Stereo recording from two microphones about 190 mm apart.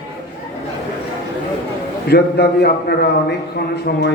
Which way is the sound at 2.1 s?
60° left (ahead or behind).